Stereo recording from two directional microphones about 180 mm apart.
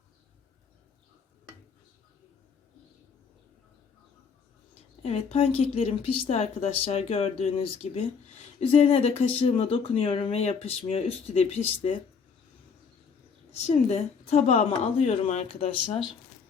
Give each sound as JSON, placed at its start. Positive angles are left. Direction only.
{"t": 5.0, "sound": "speech", "side_deg": 35}
{"t": 13.5, "sound": "speech", "side_deg": 35}